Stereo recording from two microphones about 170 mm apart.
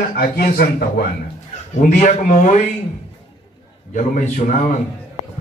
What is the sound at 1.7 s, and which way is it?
Speech, 50° left (ahead or behind).